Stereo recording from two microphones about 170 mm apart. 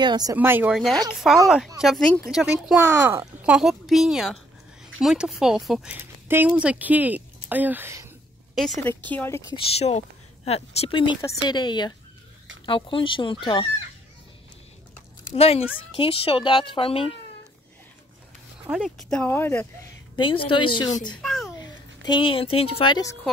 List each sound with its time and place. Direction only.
0.0 s speech: 25° right (ahead or behind)
3.5 s speech: centre (ahead or behind)
8.8 s speech: 10° left (ahead or behind)
9.5 s speech: 35° left (ahead or behind)
15.2 s speech: 40° left (ahead or behind)
18.7 s speech: centre (ahead or behind)
20.2 s speech: 30° left (ahead or behind)
21.2 s a sound: centre (ahead or behind)
21.5 s a woman's voice: 25° left (ahead or behind)